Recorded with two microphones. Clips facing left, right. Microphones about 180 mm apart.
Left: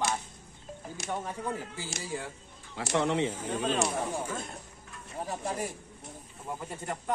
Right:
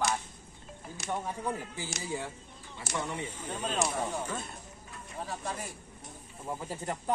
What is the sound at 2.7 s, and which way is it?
Speech, 90° left.